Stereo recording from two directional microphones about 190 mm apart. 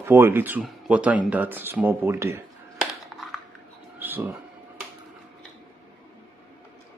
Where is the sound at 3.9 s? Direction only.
10° right (ahead or behind).